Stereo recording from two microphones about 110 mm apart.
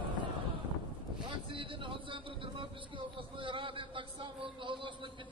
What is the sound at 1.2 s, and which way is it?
Vehicle, 50° right (ahead or behind).